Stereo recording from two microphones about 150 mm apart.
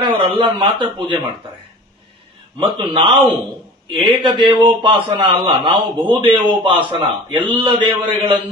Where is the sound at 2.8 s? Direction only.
35° right (ahead or behind).